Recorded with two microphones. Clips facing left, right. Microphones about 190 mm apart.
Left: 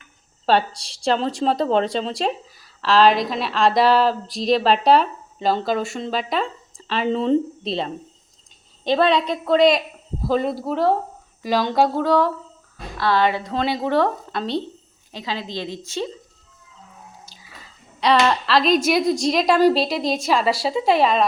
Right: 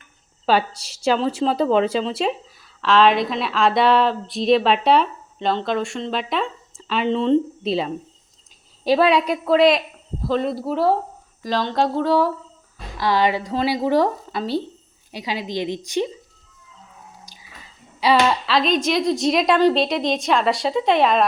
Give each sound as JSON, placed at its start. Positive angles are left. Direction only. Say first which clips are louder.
{"t": 0.9, "sound": "speech", "louder": "right 3 dB", "side_deg": -5}
{"t": 8.8, "sound": "a woman's voice", "louder": "right 1 dB", "side_deg": -10}
{"t": 11.4, "sound": "speech", "louder": "left 2 dB", "side_deg": 10}
{"t": 13.0, "sound": "a woman's voice", "louder": "even", "side_deg": -15}
{"t": 18.0, "sound": "speech", "louder": "even", "side_deg": -5}